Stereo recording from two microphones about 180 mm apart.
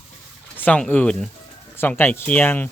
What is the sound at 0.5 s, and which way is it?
A woman's voice, 10° left (ahead or behind).